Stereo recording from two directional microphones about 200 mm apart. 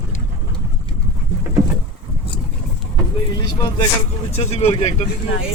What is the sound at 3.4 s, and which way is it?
Speech, 20° left (ahead or behind).